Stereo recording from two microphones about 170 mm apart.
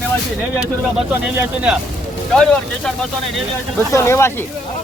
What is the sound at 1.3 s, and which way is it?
Speech, 5° right (ahead or behind).